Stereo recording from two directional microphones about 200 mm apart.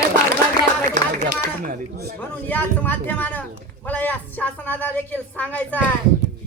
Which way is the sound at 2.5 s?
10° left (ahead or behind).